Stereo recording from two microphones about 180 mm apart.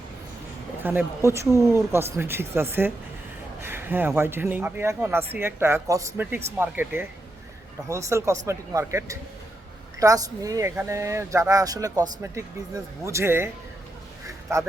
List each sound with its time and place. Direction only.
0.8 s speech: 10° right (ahead or behind)